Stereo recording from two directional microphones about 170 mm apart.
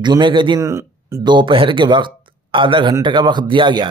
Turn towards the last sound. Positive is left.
turn(degrees=-30)  # may be behind; listen again after turning